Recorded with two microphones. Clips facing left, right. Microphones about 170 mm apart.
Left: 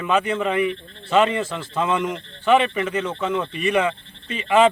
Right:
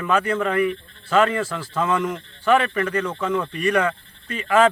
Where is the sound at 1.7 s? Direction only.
10° left (ahead or behind).